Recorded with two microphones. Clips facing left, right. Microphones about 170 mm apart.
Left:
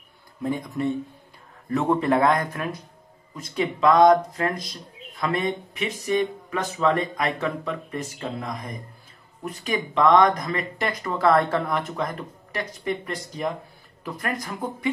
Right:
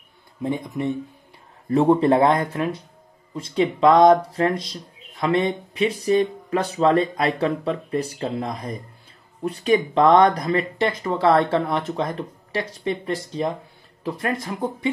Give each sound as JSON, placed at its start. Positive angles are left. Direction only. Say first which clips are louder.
{"t": 0.4, "sound": "speech", "louder": "right 1 dB", "side_deg": -20}
{"t": 1.7, "sound": "speech", "louder": "right 5 dB", "side_deg": -30}